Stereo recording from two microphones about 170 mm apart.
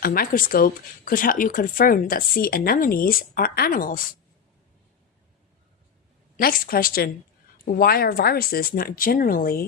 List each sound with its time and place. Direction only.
0.0 s speech: 60° left (ahead or behind)
6.3 s speech: 55° left (ahead or behind)